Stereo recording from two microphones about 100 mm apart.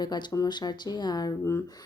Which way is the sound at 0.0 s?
45° left (ahead or behind).